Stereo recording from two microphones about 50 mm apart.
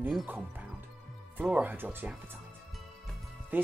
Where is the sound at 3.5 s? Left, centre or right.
Right.